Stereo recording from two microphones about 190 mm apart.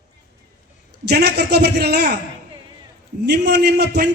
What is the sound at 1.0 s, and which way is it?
A man's voice, 60° right (ahead or behind).